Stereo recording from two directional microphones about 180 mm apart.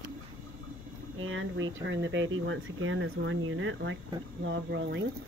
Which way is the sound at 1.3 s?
90° right.